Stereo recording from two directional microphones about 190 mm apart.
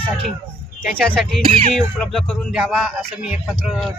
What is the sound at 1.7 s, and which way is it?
Speech, centre (ahead or behind).